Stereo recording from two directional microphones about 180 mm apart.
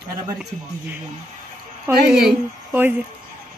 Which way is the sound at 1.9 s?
15° right (ahead or behind).